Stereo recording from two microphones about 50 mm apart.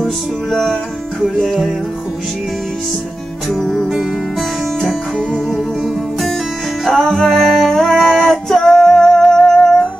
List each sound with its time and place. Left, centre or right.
0.0 s music: centre
3.4 s music: centre
6.9 s music: centre